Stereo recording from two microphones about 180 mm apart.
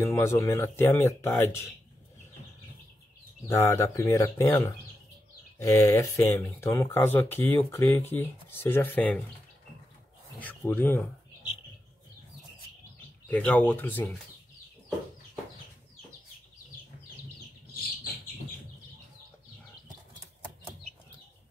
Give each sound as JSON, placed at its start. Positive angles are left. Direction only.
{"t": 0.0, "sound": "speech", "side_deg": 10}
{"t": 3.4, "sound": "speech", "side_deg": 15}
{"t": 10.4, "sound": "speech", "side_deg": 10}
{"t": 13.3, "sound": "speech", "side_deg": 10}